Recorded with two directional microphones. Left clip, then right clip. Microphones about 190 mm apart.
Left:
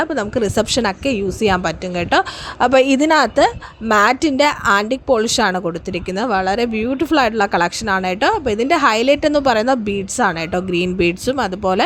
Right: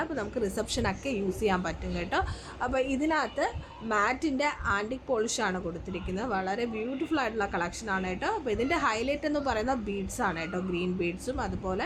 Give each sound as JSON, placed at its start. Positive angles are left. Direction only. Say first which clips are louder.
{"t": 0.0, "sound": "a woman's voice", "louder": "left 13 dB", "side_deg": 40}